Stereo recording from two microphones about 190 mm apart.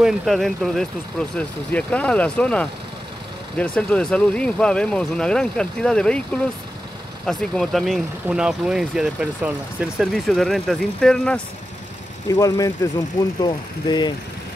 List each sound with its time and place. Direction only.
0.0 s speech: centre (ahead or behind)
12.3 s speech: 15° left (ahead or behind)